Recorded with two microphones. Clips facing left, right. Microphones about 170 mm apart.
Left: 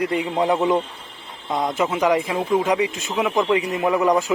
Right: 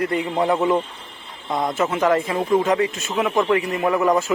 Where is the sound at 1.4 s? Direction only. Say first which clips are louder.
Even; centre (ahead or behind).